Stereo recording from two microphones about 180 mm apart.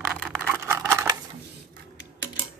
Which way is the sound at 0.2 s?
5° left (ahead or behind).